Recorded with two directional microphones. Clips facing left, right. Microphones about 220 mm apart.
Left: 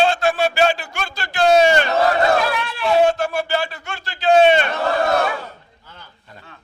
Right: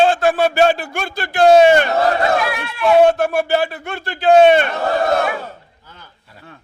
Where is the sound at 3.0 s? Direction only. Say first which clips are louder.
Right 4 dB; 60° right (ahead or behind).